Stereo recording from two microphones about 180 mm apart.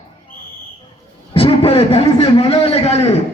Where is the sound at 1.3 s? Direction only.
30° left (ahead or behind).